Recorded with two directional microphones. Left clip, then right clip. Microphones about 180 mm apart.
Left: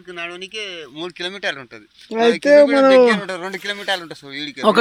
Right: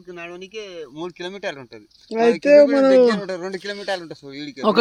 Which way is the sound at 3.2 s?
35° right (ahead or behind).